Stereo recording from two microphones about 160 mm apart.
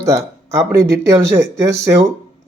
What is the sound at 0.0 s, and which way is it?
Speech, 20° right (ahead or behind).